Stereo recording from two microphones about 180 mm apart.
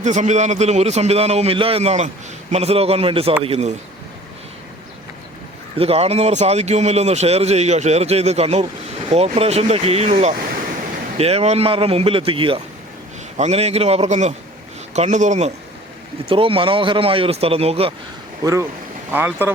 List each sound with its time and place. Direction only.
0.0 s a man's voice: 40° right (ahead or behind)
5.7 s a man's voice: 35° right (ahead or behind)
19.1 s speech: 10° right (ahead or behind)